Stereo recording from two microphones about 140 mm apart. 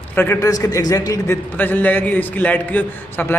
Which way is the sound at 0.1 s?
15° left (ahead or behind).